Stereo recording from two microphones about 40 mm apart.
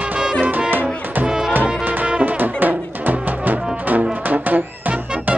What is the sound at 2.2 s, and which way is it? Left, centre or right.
Music, right.